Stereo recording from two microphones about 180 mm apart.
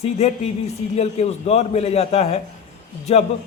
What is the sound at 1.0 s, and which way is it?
A man's voice, 35° left (ahead or behind).